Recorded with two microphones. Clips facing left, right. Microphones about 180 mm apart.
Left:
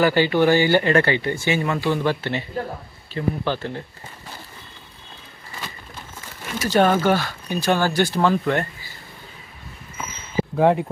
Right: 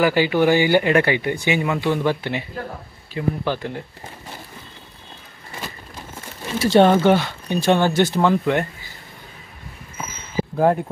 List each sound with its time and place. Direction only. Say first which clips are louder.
0.0 s speech: even; 10° right (ahead or behind)
6.4 s speech: right 4 dB; 25° right (ahead or behind)
10.6 s speech: even; centre (ahead or behind)